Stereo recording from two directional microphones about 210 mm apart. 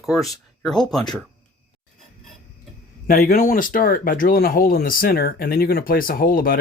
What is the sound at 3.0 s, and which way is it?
Speech, 45° left (ahead or behind).